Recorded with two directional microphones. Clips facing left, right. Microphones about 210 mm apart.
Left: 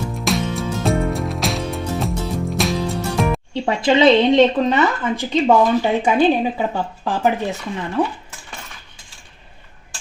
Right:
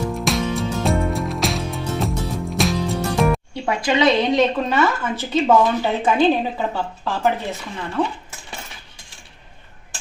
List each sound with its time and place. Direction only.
0.3 s music: centre (ahead or behind)
3.5 s speech: 25° left (ahead or behind)